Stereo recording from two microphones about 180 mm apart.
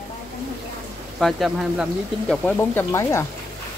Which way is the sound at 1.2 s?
Centre (ahead or behind).